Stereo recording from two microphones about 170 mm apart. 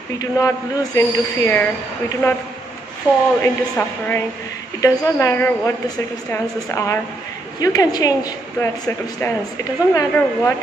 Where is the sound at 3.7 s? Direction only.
10° left (ahead or behind).